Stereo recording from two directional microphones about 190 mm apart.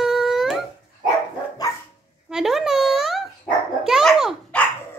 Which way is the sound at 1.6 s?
20° left (ahead or behind).